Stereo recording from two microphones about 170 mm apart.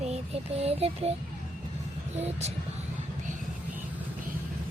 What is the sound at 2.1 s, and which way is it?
Speech, 40° right (ahead or behind).